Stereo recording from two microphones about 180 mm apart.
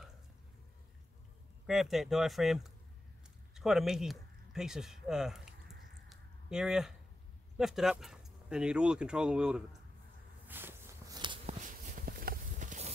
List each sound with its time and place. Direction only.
1.7 s speech: centre (ahead or behind)
6.0 s a sound: centre (ahead or behind)
7.5 s speech: centre (ahead or behind)
10.4 s walk: 10° right (ahead or behind)
11.6 s clip-clop: 45° right (ahead or behind)